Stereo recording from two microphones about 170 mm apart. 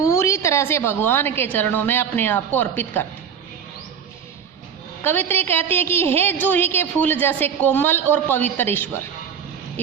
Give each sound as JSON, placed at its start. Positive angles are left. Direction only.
{"t": 0.0, "sound": "a woman's voice", "side_deg": 15}
{"t": 5.0, "sound": "a woman's voice", "side_deg": 15}